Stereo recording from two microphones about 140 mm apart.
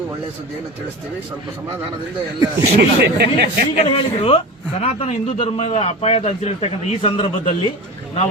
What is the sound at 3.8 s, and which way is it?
A man's voice, 40° left (ahead or behind).